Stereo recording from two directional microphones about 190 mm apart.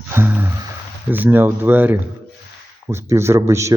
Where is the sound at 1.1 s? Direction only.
10° right (ahead or behind).